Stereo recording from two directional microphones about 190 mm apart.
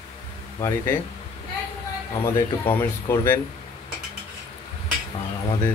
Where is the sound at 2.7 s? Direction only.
10° left (ahead or behind).